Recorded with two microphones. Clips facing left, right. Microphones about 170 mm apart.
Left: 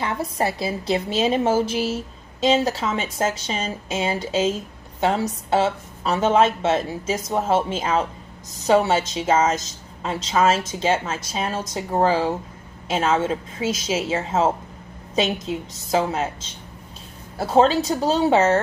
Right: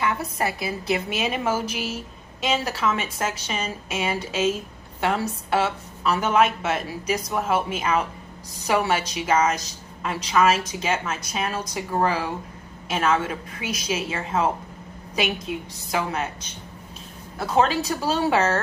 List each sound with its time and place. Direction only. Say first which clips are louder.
0.0 s a woman's voice: left 2 dB; 30° left (ahead or behind)
17.4 s a woman's voice: left 4 dB; 30° left (ahead or behind)